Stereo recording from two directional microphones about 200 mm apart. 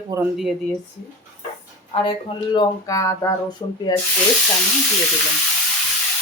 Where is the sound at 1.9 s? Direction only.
30° left (ahead or behind).